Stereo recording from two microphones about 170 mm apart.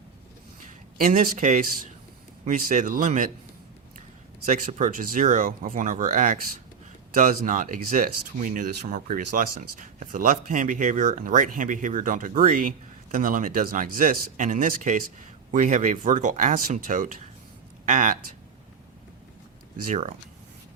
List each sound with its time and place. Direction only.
0.9 s speech: 55° right (ahead or behind)
4.4 s speech: 50° right (ahead or behind)
19.7 s speech: 50° right (ahead or behind)